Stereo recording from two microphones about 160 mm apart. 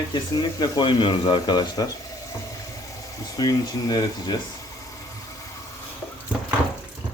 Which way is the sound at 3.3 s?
25° left (ahead or behind).